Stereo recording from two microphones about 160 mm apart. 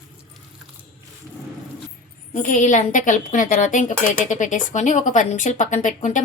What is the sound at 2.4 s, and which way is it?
Speech, 55° left (ahead or behind).